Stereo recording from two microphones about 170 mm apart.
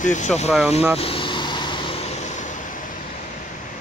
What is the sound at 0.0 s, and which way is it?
Speech, 45° left (ahead or behind).